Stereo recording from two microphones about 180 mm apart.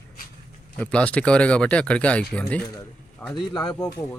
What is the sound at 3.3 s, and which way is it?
Speech, 25° left (ahead or behind).